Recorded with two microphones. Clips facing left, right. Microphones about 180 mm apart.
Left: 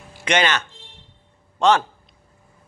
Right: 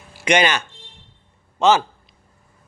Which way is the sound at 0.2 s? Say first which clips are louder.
Right 3 dB; 10° right (ahead or behind).